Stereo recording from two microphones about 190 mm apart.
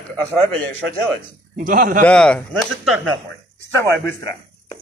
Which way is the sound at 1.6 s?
50° right (ahead or behind).